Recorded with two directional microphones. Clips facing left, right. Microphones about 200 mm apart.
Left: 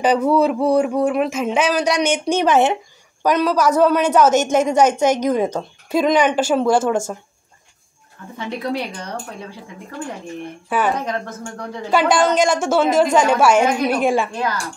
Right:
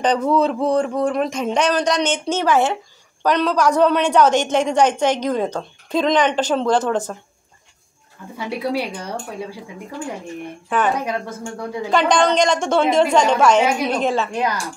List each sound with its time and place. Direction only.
0.0 s speech: 10° left (ahead or behind)
3.2 s a woman's voice: 5° left (ahead or behind)
8.4 s speech: 10° right (ahead or behind)
10.7 s speech: 10° left (ahead or behind)
11.1 s speech: 10° right (ahead or behind)
11.9 s speech: 5° left (ahead or behind)
14.3 s speech: 15° right (ahead or behind)